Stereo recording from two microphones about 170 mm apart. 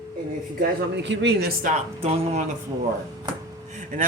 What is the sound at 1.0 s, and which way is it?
Speech, 90° right.